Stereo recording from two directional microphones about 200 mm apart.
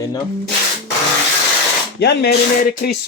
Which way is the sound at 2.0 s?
55° left (ahead or behind).